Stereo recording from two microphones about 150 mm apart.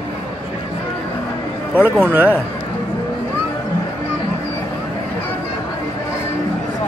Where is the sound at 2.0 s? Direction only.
10° right (ahead or behind).